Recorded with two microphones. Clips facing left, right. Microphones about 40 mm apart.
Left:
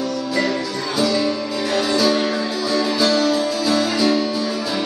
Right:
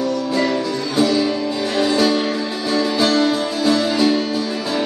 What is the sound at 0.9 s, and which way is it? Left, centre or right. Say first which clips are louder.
Music: right 2 dB; right.